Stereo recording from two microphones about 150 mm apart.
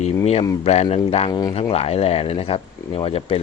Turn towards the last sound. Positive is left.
turn(degrees=40)  # may be behind; listen again after turning